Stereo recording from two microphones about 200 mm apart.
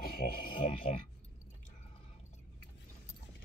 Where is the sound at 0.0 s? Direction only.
50° left (ahead or behind).